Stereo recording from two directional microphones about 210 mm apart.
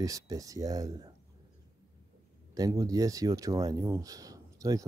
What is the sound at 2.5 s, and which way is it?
Speech, 15° right (ahead or behind).